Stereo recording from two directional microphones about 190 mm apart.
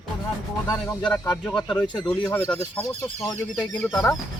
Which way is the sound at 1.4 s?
5° left (ahead or behind).